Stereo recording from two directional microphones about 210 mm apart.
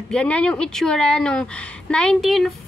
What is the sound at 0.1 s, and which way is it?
A woman's voice, 5° left (ahead or behind).